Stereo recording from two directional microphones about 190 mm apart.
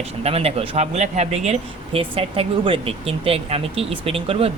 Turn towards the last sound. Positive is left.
turn(degrees=-30)  # may be behind; listen again after turning